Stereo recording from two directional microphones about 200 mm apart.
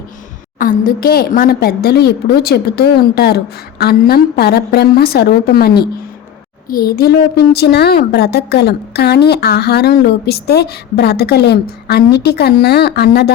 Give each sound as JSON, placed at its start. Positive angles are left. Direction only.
{"t": 0.6, "sound": "a woman's voice", "side_deg": 45}